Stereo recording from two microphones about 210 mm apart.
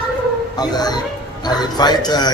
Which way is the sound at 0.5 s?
20° left (ahead or behind).